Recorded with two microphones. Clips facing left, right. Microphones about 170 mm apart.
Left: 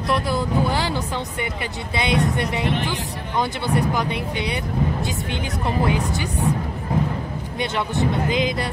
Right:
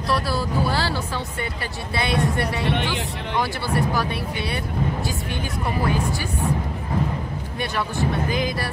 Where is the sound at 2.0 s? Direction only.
20° left (ahead or behind).